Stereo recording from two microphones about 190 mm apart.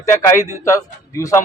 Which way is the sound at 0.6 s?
15° left (ahead or behind).